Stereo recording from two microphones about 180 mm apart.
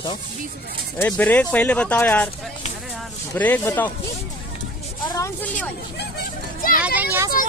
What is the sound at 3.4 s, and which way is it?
Speech, 10° left (ahead or behind).